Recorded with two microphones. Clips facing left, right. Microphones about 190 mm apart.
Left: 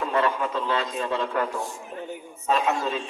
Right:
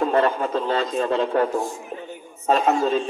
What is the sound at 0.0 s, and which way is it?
A man's voice, 40° right (ahead or behind).